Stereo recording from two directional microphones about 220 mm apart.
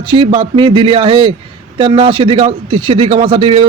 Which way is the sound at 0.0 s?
25° right (ahead or behind).